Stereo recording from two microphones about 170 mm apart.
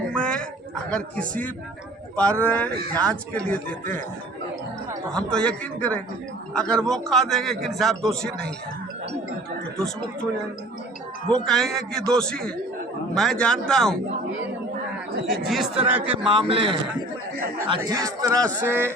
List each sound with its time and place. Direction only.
0.1 s a sound: 5° left (ahead or behind)
0.9 s a man's voice: 5° left (ahead or behind)
5.1 s a man's voice: 5° left (ahead or behind)
9.7 s a man's voice: 5° left (ahead or behind)
11.4 s a man's voice: centre (ahead or behind)
15.3 s a man's voice: centre (ahead or behind)
16.2 s a man's voice: 30° right (ahead or behind); by 18.9 s 15° right (ahead or behind)